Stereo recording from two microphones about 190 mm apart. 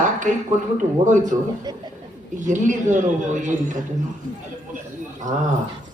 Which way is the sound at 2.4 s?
40° right (ahead or behind).